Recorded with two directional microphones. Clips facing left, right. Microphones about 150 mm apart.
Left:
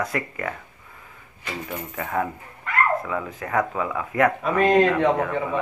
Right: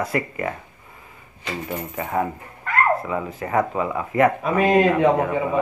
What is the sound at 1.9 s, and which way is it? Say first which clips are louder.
Speech: right 2 dB; 10° right (ahead or behind).